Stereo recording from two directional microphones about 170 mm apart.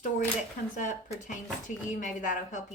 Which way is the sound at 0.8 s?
45° left (ahead or behind).